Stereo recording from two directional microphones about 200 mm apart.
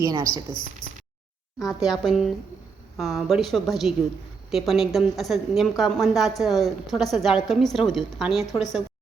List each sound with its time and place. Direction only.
0.0 s speech: 15° right (ahead or behind)
1.5 s a woman's voice: centre (ahead or behind)